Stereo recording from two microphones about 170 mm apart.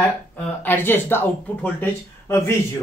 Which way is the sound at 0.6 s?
15° left (ahead or behind).